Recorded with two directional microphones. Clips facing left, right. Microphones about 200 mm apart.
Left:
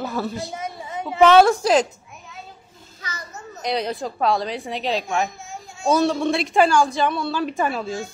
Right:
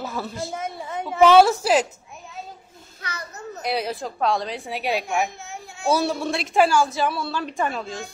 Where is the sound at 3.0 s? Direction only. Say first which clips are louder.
Right 1 dB; 60° right (ahead or behind).